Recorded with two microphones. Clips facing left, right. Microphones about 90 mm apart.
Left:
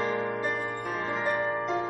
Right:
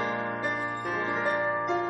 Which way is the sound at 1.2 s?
20° right (ahead or behind).